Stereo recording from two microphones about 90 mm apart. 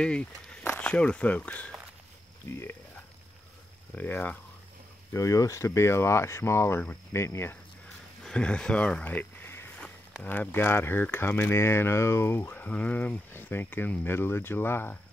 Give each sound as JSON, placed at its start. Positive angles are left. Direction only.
{"t": 0.0, "sound": "speech", "side_deg": 10}
{"t": 3.9, "sound": "speech", "side_deg": 20}
{"t": 5.1, "sound": "speech", "side_deg": 40}
{"t": 8.2, "sound": "a sound", "side_deg": 10}
{"t": 10.2, "sound": "speech", "side_deg": 20}